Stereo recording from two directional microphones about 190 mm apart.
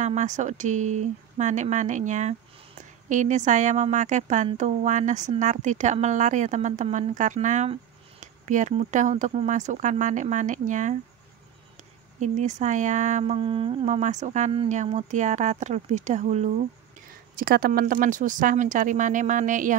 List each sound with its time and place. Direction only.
0.0 s a woman's voice: 40° right (ahead or behind)
12.2 s a woman's voice: 40° right (ahead or behind)
17.4 s speech: 50° right (ahead or behind)